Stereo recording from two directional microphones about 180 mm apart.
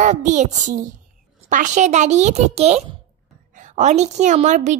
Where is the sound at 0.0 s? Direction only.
40° right (ahead or behind).